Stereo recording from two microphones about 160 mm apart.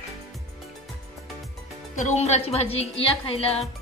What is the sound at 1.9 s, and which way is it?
Speech, 45° left (ahead or behind).